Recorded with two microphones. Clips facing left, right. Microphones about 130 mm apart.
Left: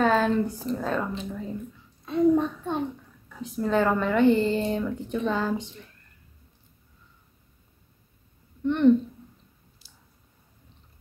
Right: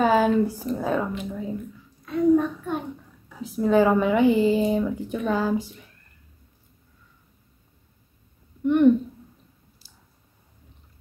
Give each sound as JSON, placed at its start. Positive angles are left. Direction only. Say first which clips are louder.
{"t": 0.0, "sound": "speech", "louder": "right 3 dB", "side_deg": -5}
{"t": 2.0, "sound": "a sound", "louder": "right 2 dB", "side_deg": 25}
{"t": 3.3, "sound": "a woman's voice", "louder": "right 4 dB", "side_deg": -5}
{"t": 8.6, "sound": "speech", "louder": "right 3 dB", "side_deg": -10}